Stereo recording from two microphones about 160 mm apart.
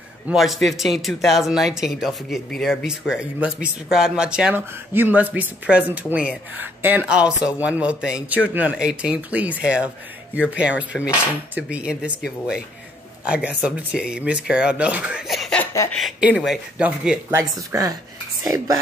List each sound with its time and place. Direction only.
0.3 s speech: centre (ahead or behind)
13.2 s speech: 10° right (ahead or behind)
15.6 s chuckle: 20° left (ahead or behind)
15.9 s speech: centre (ahead or behind)
17.3 s speech: 20° right (ahead or behind)